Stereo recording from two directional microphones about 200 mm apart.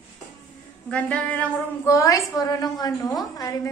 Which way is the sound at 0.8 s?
5° left (ahead or behind).